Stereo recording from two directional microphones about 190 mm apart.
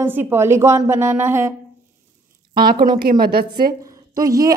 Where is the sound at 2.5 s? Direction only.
50° right (ahead or behind).